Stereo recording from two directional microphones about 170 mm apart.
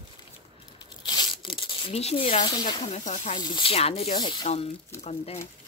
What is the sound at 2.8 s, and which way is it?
Speech, 45° left (ahead or behind).